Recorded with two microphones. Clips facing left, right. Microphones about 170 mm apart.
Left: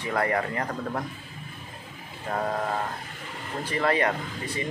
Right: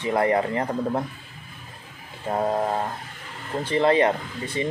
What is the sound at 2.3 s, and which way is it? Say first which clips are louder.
Speech: right 5 dB; 25° right (ahead or behind).